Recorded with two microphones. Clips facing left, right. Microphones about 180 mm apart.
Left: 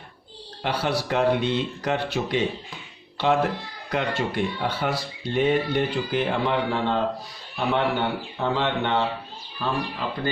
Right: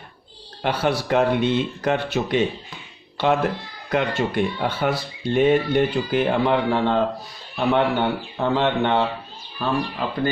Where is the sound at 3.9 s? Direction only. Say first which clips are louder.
Right 4 dB; 55° right (ahead or behind).